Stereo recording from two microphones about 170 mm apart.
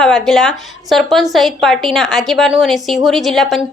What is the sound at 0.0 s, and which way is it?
A woman's voice, centre (ahead or behind).